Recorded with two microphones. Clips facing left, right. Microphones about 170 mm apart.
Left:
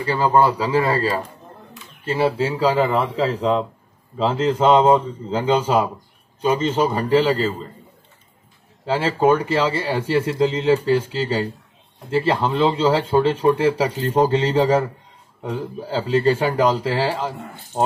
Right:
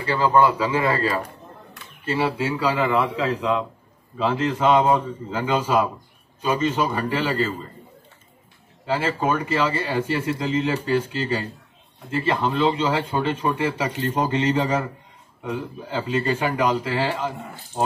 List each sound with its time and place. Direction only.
0.0 s speech: 30° left (ahead or behind)
2.2 s speech: 30° left (ahead or behind)
9.2 s speech: 35° left (ahead or behind)